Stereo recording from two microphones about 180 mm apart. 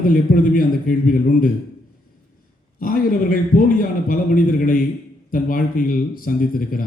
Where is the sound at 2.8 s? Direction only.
50° left (ahead or behind).